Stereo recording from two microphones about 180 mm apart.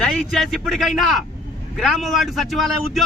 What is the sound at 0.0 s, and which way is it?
A man's voice, centre (ahead or behind).